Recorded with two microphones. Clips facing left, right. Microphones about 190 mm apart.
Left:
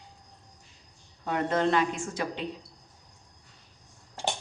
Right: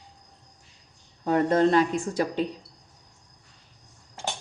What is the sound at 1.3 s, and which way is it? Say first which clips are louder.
A woman's voice: right 5 dB; 40° right (ahead or behind).